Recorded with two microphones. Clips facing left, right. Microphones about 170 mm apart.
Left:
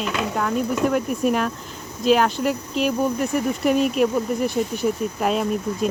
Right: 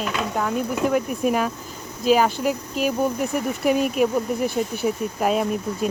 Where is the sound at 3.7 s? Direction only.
5° right (ahead or behind).